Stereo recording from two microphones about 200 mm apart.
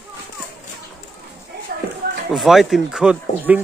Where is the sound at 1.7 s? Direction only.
50° right (ahead or behind).